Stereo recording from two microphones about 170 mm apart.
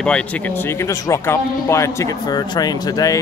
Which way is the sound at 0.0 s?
5° left (ahead or behind).